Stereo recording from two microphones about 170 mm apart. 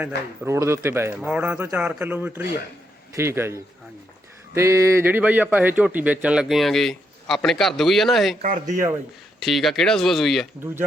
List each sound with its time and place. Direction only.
0.4 s speech: 15° right (ahead or behind); by 8.4 s centre (ahead or behind)
8.7 s speech: 15° right (ahead or behind)
9.4 s speech: centre (ahead or behind)